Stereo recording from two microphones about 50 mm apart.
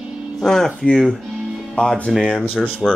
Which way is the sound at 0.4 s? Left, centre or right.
Centre.